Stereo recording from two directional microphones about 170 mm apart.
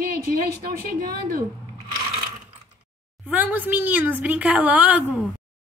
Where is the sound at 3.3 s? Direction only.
10° right (ahead or behind).